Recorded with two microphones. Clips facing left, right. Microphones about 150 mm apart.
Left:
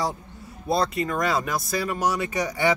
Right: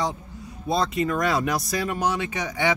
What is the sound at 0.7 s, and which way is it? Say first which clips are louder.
Speech: even; centre (ahead or behind).